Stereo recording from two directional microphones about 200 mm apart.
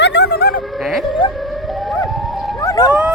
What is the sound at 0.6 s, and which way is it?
Dog, centre (ahead or behind).